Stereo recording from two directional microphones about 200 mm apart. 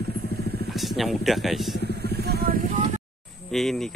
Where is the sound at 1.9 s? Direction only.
50° right (ahead or behind).